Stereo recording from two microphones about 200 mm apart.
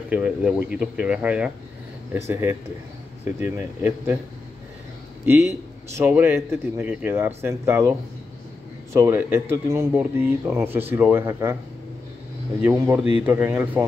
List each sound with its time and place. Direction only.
0.1 s a man's voice: 5° right (ahead or behind)
5.2 s a man's voice: 10° right (ahead or behind)
8.9 s a man's voice: 10° right (ahead or behind)
12.6 s a man's voice: 10° right (ahead or behind)